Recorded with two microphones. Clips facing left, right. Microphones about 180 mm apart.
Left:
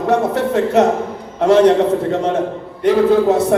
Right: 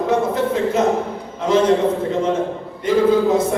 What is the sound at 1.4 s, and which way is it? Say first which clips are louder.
Speech: left 6 dB; 70° left (ahead or behind).